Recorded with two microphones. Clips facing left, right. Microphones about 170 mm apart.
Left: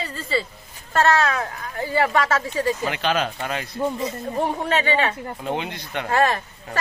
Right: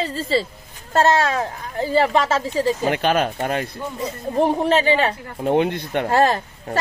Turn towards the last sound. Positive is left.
turn(degrees=-35)  # may be behind; listen again after turning